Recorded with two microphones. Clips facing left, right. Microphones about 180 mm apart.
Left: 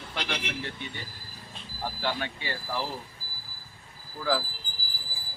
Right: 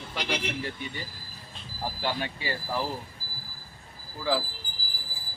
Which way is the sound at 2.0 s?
10° right (ahead or behind).